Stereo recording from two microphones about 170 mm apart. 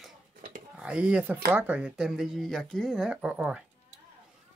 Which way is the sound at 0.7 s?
5° right (ahead or behind).